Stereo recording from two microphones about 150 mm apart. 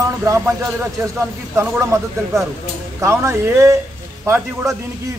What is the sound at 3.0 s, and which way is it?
A man's voice, 20° right (ahead or behind).